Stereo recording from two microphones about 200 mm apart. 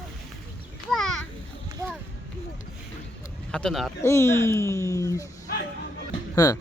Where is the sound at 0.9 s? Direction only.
Centre (ahead or behind).